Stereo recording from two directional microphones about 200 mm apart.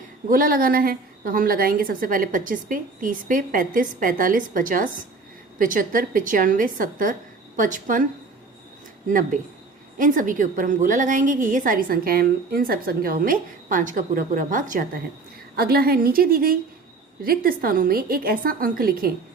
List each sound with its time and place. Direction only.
0.3 s a woman's voice: 45° right (ahead or behind)
9.0 s a woman's voice: 40° right (ahead or behind)